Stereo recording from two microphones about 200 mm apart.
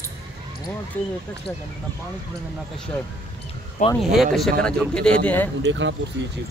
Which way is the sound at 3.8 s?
40° left (ahead or behind).